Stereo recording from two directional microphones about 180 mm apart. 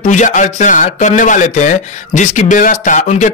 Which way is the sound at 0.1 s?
40° left (ahead or behind).